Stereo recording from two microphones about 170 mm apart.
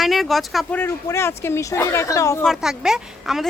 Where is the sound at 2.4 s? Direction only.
Centre (ahead or behind).